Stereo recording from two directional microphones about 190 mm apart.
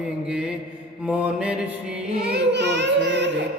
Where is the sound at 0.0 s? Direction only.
5° right (ahead or behind).